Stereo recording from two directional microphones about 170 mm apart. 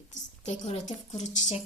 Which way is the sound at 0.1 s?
45° left (ahead or behind).